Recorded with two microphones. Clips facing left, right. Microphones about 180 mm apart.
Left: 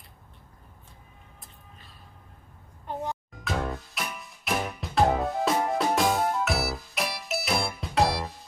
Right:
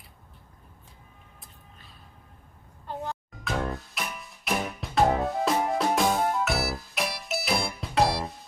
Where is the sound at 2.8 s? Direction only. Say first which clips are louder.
Left 2 dB; 15° left (ahead or behind).